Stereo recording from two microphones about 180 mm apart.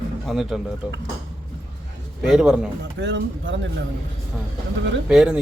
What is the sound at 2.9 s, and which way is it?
Speech, 80° right.